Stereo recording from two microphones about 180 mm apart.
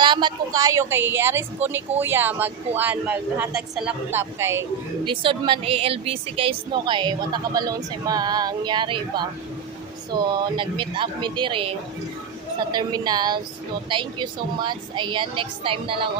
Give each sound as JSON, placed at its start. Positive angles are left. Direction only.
{"t": 0.0, "sound": "a woman's voice", "side_deg": -25}
{"t": 5.0, "sound": "a woman's voice", "side_deg": -25}
{"t": 12.7, "sound": "a woman's voice", "side_deg": -20}